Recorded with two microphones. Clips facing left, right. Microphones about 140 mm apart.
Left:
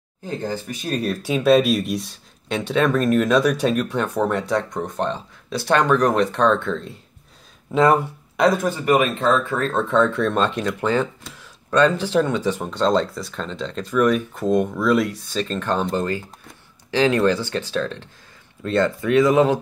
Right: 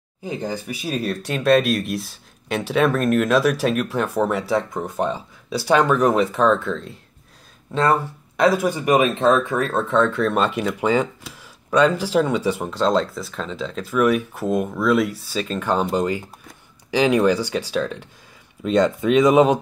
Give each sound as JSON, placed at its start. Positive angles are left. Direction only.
{"t": 0.2, "sound": "speech", "side_deg": -15}
{"t": 7.7, "sound": "speech", "side_deg": 10}
{"t": 8.4, "sound": "speech", "side_deg": -5}
{"t": 9.8, "sound": "speech", "side_deg": 0}